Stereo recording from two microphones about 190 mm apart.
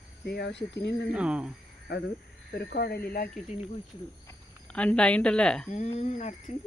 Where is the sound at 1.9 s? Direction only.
60° left (ahead or behind).